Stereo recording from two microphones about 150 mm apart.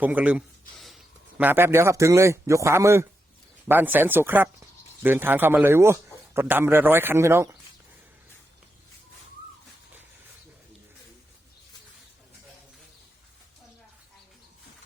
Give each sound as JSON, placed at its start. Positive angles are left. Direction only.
{"t": 0.0, "sound": "speech", "side_deg": -10}
{"t": 0.8, "sound": "a sound", "side_deg": 0}
{"t": 1.4, "sound": "a man's voice", "side_deg": -15}